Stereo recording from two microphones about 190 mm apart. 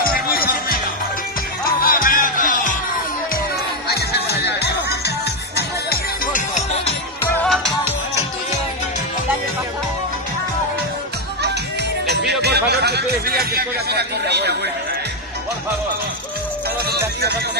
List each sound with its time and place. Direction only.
0.0 s music: 50° left (ahead or behind)
1.8 s music: 45° left (ahead or behind)
3.8 s music: 55° left (ahead or behind)
7.4 s music: 5° left (ahead or behind)
12.3 s a sound: 60° right (ahead or behind)